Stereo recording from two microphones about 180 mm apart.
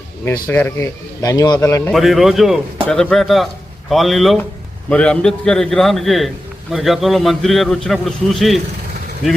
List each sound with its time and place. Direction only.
0.4 s a man's voice: 10° left (ahead or behind)
1.9 s a man's voice: centre (ahead or behind)